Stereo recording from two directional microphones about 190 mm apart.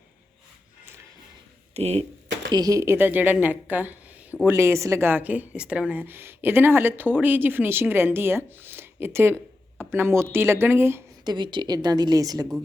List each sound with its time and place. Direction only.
1.7 s speech: 35° right (ahead or behind)
2.5 s a woman's voice: 20° right (ahead or behind)
11.3 s a woman's voice: 25° right (ahead or behind)